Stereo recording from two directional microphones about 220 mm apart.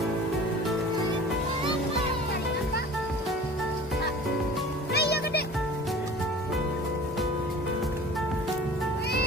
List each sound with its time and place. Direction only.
4.9 s music: 45° left (ahead or behind)